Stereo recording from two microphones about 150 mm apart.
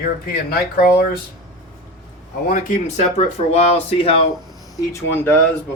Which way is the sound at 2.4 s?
65° left (ahead or behind).